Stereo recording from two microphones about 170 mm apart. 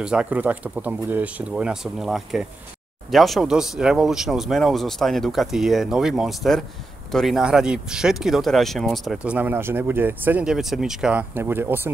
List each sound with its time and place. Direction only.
0.0 s speech: 5° right (ahead or behind)